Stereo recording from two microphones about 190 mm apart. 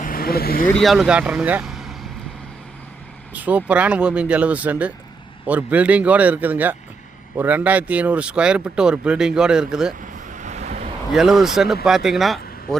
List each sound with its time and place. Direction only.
0.0 s vehicle: 50° left (ahead or behind)
0.8 s speech: centre (ahead or behind)
3.3 s speech: 10° right (ahead or behind)
10.2 s vehicle: 40° right (ahead or behind)
11.1 s speech: centre (ahead or behind)